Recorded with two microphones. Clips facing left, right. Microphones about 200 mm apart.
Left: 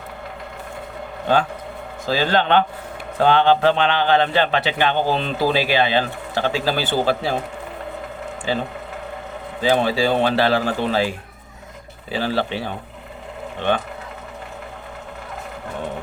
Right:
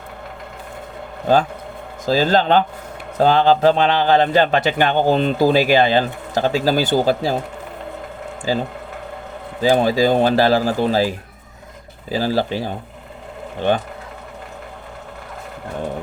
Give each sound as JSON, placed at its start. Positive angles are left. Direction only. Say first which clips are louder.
{"t": 2.0, "sound": "a man's voice", "louder": "right 3 dB", "side_deg": -40}
{"t": 8.5, "sound": "a man's voice", "louder": "right 3 dB", "side_deg": -40}